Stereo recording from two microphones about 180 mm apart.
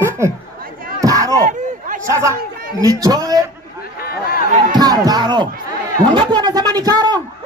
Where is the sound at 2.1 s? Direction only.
15° right (ahead or behind).